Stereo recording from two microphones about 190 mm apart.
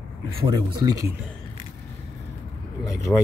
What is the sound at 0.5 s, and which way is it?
Speech, 20° right (ahead or behind).